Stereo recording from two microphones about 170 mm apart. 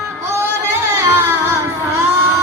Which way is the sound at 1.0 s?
15° right (ahead or behind).